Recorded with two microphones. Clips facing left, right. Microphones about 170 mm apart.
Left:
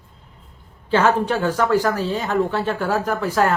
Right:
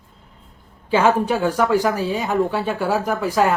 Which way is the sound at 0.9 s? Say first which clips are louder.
Right 1 dB; 10° right (ahead or behind).